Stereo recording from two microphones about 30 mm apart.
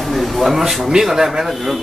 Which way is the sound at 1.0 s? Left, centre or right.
Centre.